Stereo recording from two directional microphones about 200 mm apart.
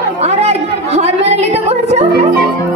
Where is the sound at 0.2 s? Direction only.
30° right (ahead or behind).